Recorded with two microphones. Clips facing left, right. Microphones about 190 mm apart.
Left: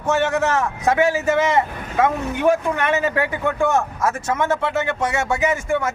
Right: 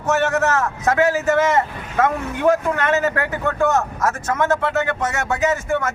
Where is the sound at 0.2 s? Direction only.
15° left (ahead or behind).